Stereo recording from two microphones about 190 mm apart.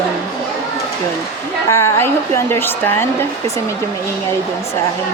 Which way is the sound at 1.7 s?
15° left (ahead or behind).